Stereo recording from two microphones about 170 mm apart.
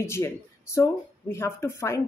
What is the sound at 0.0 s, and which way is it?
Speech, 15° left (ahead or behind).